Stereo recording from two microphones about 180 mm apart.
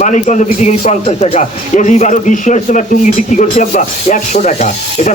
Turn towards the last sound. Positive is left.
turn(degrees=40)  # may be behind; listen again after turning